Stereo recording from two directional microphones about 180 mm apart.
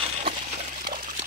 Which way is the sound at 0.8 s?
50° right (ahead or behind).